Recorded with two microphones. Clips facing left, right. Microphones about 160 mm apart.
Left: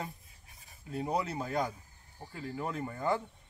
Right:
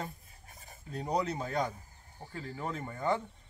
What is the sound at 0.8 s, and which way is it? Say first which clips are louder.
Speech: right 1 dB; 5° left (ahead or behind).